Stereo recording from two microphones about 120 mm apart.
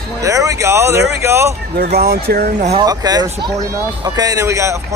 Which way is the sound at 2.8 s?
35° right (ahead or behind).